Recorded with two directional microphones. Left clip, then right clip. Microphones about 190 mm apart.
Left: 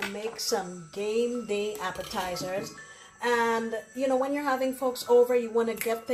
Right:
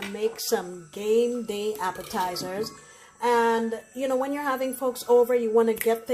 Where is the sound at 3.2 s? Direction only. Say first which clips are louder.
Right 4 dB; 50° right (ahead or behind).